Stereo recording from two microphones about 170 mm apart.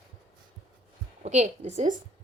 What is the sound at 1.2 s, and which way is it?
Speech, 40° right (ahead or behind).